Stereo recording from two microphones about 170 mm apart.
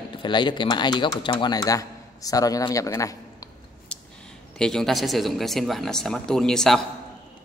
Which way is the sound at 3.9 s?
5° left (ahead or behind).